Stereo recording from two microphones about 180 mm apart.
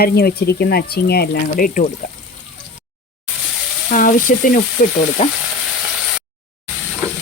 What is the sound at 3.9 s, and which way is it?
Speech, 50° left (ahead or behind).